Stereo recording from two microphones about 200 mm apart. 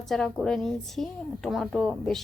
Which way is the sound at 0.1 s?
Centre (ahead or behind).